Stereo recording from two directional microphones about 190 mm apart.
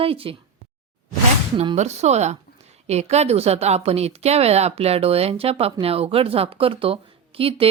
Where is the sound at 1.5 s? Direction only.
30° right (ahead or behind).